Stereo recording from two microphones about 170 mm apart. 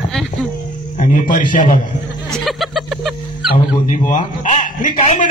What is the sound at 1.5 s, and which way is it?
Speech, 50° left (ahead or behind).